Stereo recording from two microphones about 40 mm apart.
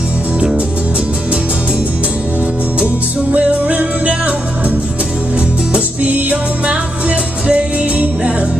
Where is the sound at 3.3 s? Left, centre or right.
Right.